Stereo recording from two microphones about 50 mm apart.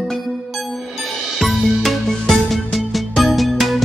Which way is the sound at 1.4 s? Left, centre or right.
Centre.